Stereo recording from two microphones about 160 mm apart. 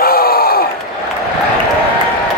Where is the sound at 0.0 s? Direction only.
70° left (ahead or behind).